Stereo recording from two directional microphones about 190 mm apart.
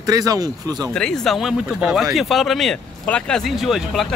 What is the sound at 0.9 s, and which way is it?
A man's voice, 5° left (ahead or behind).